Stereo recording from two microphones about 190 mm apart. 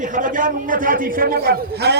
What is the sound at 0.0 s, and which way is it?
A man's voice, 45° right (ahead or behind).